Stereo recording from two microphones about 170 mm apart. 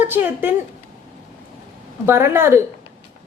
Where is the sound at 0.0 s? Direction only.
10° right (ahead or behind).